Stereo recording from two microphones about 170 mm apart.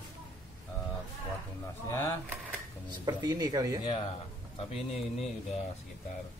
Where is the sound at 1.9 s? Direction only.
15° left (ahead or behind).